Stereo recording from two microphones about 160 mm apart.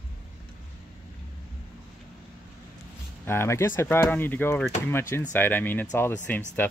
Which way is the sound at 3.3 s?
15° left (ahead or behind).